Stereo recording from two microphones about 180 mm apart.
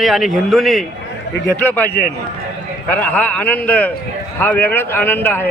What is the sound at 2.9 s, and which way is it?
Speech, 10° left (ahead or behind).